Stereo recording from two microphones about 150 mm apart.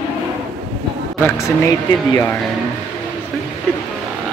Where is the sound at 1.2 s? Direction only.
20° left (ahead or behind).